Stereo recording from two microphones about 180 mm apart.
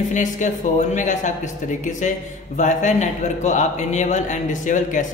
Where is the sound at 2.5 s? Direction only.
40° left (ahead or behind).